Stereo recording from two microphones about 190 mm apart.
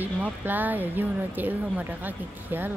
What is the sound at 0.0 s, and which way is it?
Speech, 10° right (ahead or behind).